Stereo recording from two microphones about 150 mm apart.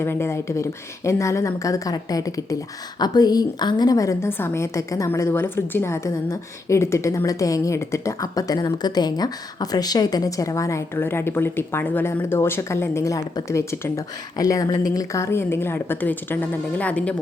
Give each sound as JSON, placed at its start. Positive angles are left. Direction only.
{"t": 0.0, "sound": "a woman's voice", "side_deg": 15}